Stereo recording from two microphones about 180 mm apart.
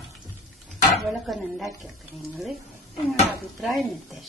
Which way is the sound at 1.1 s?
Centre (ahead or behind).